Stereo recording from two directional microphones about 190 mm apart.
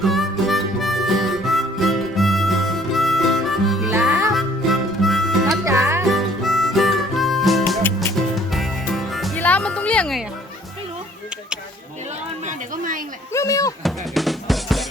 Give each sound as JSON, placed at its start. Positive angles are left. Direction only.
{"t": 0.0, "sound": "harmonica", "side_deg": 0}
{"t": 3.9, "sound": "harmonica", "side_deg": -15}
{"t": 4.3, "sound": "harmonica", "side_deg": 0}
{"t": 5.6, "sound": "music", "side_deg": -15}
{"t": 6.1, "sound": "harmonica", "side_deg": 0}
{"t": 8.4, "sound": "music", "side_deg": 0}
{"t": 12.5, "sound": "a sound", "side_deg": -45}
{"t": 13.3, "sound": "a sound", "side_deg": 15}
{"t": 13.8, "sound": "music", "side_deg": 0}